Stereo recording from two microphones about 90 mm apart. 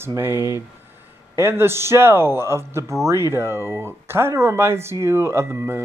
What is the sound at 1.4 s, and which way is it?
Speech, 25° right (ahead or behind).